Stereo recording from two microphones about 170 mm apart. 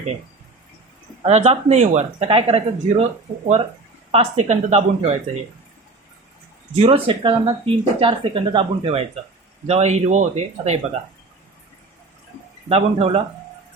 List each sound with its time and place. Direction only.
1.2 s speech: 40° right (ahead or behind)
4.1 s speech: 40° right (ahead or behind)
6.7 s speech: 35° right (ahead or behind)
12.6 s speech: 35° right (ahead or behind)